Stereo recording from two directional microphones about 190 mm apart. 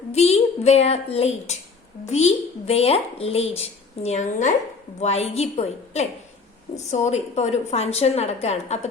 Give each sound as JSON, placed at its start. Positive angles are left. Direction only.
{"t": 0.1, "sound": "speech", "side_deg": 35}